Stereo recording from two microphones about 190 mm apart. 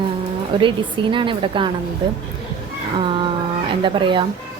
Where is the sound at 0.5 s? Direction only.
25° right (ahead or behind).